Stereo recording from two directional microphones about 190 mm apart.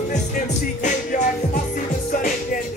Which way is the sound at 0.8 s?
40° left (ahead or behind).